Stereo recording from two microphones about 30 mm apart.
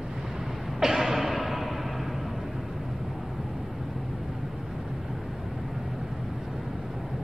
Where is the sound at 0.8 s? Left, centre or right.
Centre.